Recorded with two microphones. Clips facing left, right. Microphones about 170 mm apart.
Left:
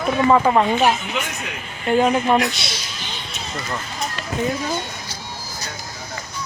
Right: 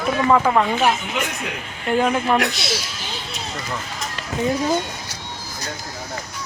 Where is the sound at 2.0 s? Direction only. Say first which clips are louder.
Left 2 dB; 20° left (ahead or behind).